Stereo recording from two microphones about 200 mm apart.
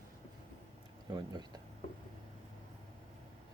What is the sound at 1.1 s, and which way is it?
Speech, 20° right (ahead or behind).